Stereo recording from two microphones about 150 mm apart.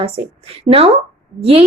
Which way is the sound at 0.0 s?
40° right (ahead or behind).